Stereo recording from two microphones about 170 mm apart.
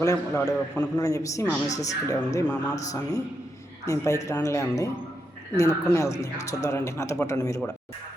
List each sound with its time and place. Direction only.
0.0 s a man's voice: 15° left (ahead or behind)